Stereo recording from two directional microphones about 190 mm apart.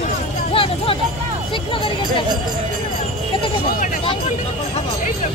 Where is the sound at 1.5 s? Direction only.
25° left (ahead or behind).